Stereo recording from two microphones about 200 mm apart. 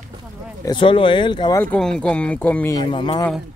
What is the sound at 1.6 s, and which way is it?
Speech, 5° left (ahead or behind).